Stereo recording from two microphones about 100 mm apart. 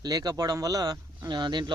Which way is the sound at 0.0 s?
40° right (ahead or behind).